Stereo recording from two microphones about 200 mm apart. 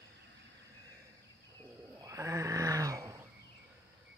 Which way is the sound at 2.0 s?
15° right (ahead or behind).